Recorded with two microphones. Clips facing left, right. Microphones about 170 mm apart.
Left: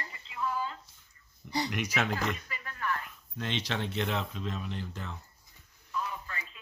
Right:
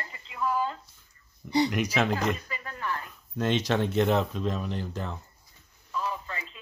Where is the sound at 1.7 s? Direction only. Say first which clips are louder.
Right 5 dB; 35° right (ahead or behind).